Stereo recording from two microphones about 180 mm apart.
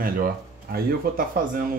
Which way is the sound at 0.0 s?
55° right (ahead or behind).